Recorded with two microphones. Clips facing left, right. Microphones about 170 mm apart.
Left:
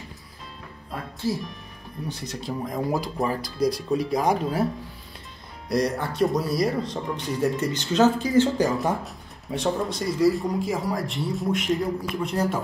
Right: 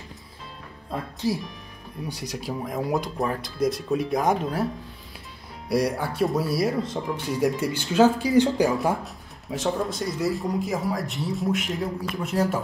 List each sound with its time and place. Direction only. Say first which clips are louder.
1.2 s speech: even; 15° right (ahead or behind)
5.7 s speech: even; 10° right (ahead or behind)
8.7 s speech: right 1 dB; centre (ahead or behind)